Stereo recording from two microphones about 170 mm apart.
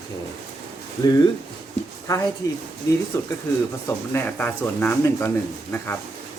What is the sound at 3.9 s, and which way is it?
Speech, 10° left (ahead or behind).